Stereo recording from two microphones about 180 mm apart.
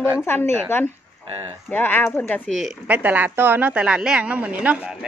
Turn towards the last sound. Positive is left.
turn(degrees=-5)  # may be behind; listen again after turning